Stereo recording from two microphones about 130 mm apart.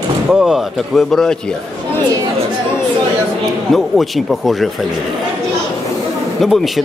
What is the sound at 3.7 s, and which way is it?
Speech, centre (ahead or behind).